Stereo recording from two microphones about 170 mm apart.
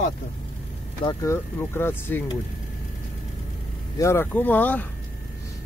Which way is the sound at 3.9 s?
15° left (ahead or behind).